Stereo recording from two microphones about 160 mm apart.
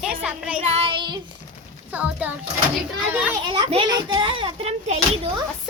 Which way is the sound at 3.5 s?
30° right (ahead or behind).